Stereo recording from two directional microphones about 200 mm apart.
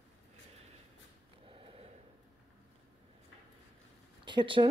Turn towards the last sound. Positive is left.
turn(degrees=-25)  # may be behind; listen again after turning